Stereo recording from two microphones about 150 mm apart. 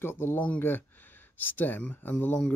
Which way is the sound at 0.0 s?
15° left (ahead or behind).